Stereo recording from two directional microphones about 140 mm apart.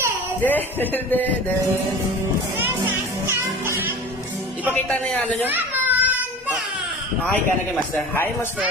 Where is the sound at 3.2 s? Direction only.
15° right (ahead or behind).